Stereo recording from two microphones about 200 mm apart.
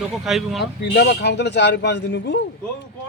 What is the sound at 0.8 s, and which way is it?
A man's voice, 60° left (ahead or behind).